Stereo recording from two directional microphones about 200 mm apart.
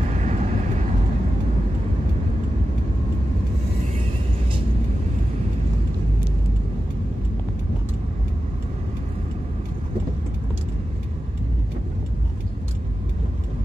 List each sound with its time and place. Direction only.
0.1 s vehicle: 35° right (ahead or behind)